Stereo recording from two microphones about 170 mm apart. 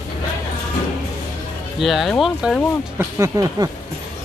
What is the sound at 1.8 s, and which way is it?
Speech, centre (ahead or behind).